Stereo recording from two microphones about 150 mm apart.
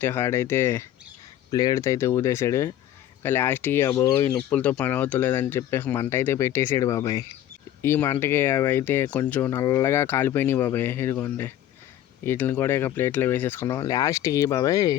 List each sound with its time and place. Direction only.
0.0 s speech: 15° left (ahead or behind)
4.4 s speech: 10° left (ahead or behind)